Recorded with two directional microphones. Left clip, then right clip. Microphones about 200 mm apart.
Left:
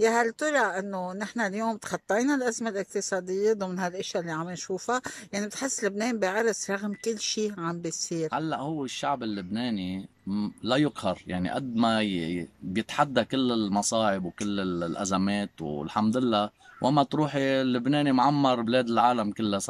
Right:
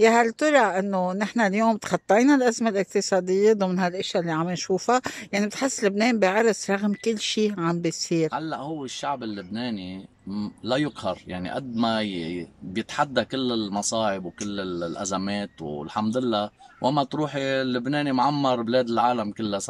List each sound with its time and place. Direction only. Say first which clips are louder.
0.0 s speech: right 5 dB; 5° right (ahead or behind)
8.3 s speech: right 1 dB; 5° left (ahead or behind)